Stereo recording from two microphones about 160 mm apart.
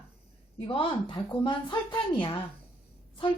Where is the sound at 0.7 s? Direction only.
35° left (ahead or behind).